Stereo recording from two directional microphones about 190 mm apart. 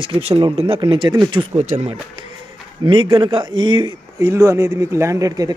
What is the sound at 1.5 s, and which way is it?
Speech, 35° right (ahead or behind).